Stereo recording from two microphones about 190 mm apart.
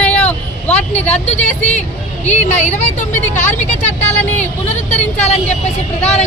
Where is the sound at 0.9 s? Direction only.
35° left (ahead or behind).